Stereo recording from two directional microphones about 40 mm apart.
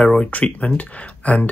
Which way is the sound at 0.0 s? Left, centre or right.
Left.